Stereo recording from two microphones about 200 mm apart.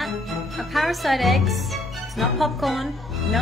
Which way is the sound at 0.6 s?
Centre (ahead or behind).